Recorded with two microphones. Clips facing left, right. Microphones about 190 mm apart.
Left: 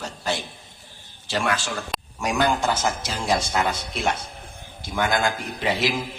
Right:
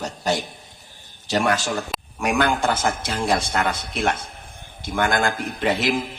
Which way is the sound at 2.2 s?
60° right (ahead or behind).